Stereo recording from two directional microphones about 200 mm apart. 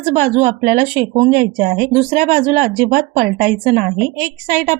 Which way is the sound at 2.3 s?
35° right (ahead or behind).